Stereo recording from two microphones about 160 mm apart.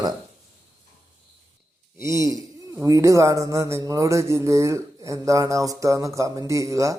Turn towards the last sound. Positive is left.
turn(degrees=-20)  # may be behind; listen again after turning